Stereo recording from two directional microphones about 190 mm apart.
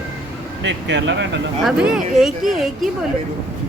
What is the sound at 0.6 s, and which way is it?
Speech, 70° right (ahead or behind).